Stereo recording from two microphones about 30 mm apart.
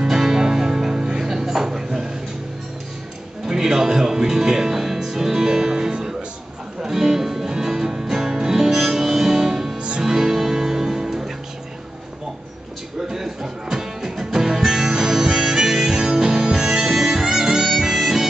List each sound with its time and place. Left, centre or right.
0.0 s music: centre
3.4 s music: centre
9.8 s music: right
10.0 s music: centre
13.1 s music: centre
15.2 s harmonica: centre